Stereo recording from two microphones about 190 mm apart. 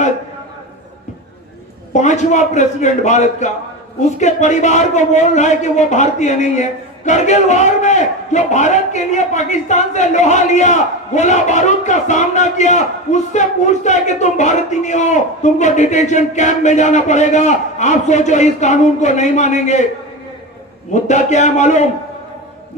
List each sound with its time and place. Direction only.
2.0 s speech: 40° left (ahead or behind)
20.9 s speech: 40° left (ahead or behind)